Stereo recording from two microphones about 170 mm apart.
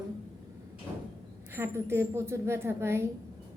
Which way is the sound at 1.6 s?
15° right (ahead or behind).